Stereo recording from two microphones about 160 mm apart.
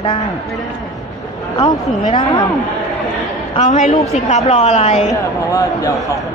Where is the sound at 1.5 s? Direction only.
30° left (ahead or behind).